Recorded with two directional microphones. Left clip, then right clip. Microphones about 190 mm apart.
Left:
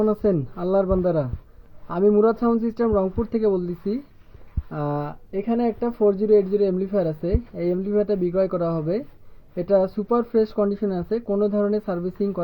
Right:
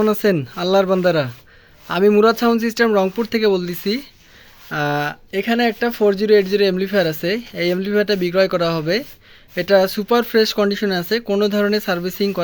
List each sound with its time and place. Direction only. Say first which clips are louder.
0.0 s speech: right 4 dB; 40° right (ahead or behind)